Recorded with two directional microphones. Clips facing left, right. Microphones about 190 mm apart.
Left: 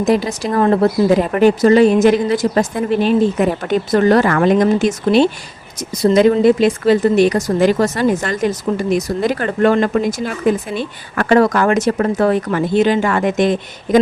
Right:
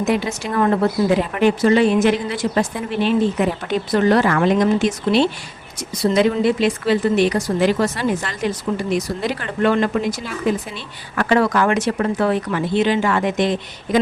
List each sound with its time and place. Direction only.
0.0 s speech: 35° left (ahead or behind)